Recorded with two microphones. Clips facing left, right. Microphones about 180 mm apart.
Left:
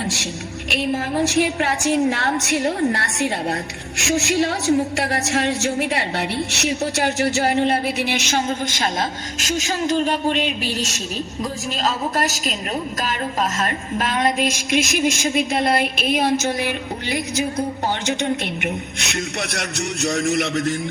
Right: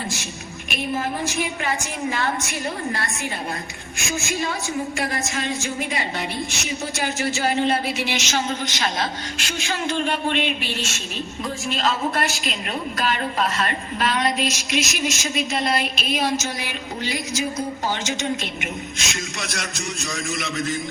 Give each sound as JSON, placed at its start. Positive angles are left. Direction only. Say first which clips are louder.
{"t": 0.0, "sound": "a woman's voice", "louder": "left 5 dB", "side_deg": 75}